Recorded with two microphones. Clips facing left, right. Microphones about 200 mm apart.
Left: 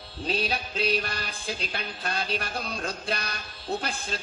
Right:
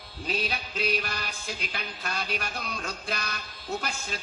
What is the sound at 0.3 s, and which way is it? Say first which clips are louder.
Music: left 3 dB; 30° left (ahead or behind).